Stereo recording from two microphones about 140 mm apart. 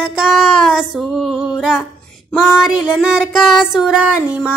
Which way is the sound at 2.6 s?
5° right (ahead or behind).